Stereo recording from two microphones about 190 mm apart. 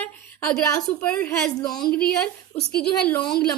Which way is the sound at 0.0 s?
5° left (ahead or behind).